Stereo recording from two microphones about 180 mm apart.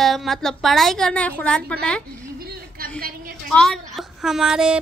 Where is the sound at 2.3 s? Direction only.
55° right (ahead or behind).